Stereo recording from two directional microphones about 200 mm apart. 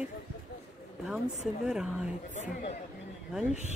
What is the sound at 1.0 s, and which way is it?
Speech, centre (ahead or behind).